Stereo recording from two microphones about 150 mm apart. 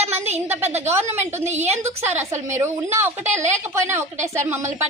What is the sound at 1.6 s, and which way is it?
Speech, 50° right (ahead or behind).